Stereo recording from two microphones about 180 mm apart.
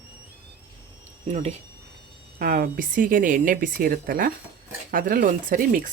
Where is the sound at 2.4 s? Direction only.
50° right (ahead or behind).